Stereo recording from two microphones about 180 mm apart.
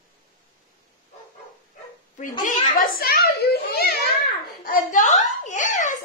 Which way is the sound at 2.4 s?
50° left (ahead or behind).